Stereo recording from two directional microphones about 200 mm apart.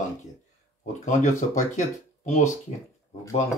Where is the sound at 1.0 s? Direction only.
35° left (ahead or behind).